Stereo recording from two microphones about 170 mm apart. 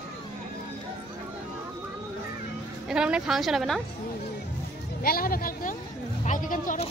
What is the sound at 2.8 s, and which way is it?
A woman's voice, 5° right (ahead or behind).